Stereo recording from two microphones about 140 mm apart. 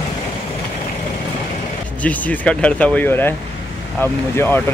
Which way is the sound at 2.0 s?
10° left (ahead or behind).